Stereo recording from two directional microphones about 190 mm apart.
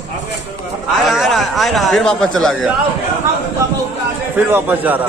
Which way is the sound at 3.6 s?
15° right (ahead or behind).